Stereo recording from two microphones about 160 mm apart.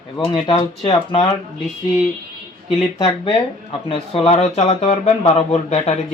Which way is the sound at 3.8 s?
40° left (ahead or behind).